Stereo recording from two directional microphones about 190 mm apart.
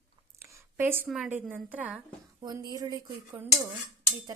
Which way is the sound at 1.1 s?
5° right (ahead or behind).